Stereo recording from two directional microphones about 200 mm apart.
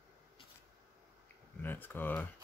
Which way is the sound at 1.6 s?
10° left (ahead or behind).